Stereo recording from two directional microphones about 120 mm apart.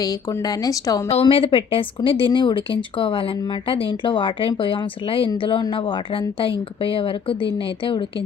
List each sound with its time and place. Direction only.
0.0 s speech: 30° left (ahead or behind)
1.1 s speech: 50° left (ahead or behind)